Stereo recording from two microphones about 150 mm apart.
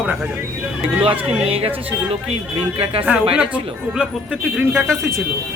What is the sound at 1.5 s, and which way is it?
Speech, 40° right (ahead or behind).